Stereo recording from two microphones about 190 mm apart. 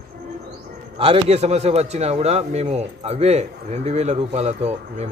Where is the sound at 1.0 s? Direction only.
30° right (ahead or behind).